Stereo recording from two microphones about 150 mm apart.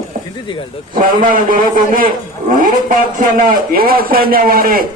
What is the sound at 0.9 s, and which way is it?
A man's voice, 65° right (ahead or behind).